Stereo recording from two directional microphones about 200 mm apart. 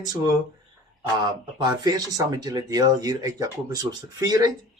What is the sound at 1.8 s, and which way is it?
Speech, 20° right (ahead or behind).